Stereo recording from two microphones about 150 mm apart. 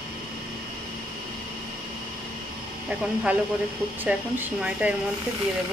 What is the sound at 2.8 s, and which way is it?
Speech, 10° right (ahead or behind).